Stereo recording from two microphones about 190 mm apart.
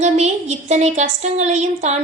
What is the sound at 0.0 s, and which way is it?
Speech, 35° right (ahead or behind).